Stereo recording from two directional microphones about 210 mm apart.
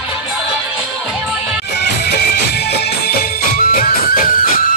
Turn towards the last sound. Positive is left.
turn(degrees=40)  # may be behind; listen again after turning